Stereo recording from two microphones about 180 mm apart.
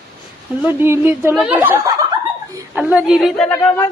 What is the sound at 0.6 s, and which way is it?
A woman's voice, 10° right (ahead or behind).